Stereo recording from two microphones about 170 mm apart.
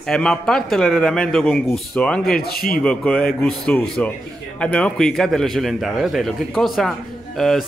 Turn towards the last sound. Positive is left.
turn(degrees=0)  # may be behind; listen again after turning